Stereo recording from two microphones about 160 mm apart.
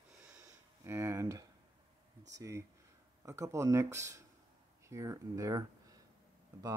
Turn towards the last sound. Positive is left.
turn(degrees=-20)  # may be behind; listen again after turning